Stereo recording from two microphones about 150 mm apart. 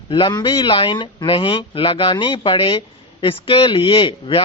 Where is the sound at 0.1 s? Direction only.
30° left (ahead or behind).